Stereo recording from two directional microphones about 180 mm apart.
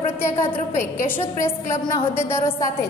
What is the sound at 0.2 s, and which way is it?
A woman's voice, 15° left (ahead or behind).